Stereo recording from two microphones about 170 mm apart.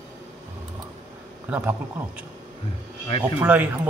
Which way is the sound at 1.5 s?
10° right (ahead or behind).